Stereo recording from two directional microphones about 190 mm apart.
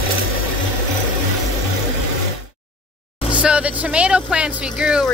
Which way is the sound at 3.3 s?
5° right (ahead or behind).